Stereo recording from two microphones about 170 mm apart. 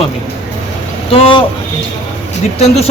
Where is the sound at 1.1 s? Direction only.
35° left (ahead or behind).